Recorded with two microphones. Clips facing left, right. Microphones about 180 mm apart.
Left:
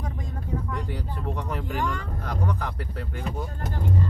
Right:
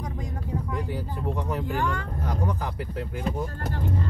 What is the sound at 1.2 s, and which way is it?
Speech, 10° right (ahead or behind).